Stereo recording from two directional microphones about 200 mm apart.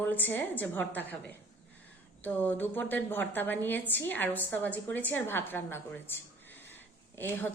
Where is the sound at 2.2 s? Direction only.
10° left (ahead or behind).